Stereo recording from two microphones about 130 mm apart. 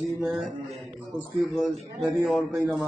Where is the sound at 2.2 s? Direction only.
Centre (ahead or behind).